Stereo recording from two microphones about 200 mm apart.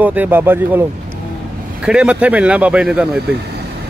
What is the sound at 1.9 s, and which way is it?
Speech, 5° right (ahead or behind).